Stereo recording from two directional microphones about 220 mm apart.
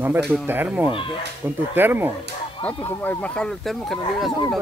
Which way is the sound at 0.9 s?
25° left (ahead or behind).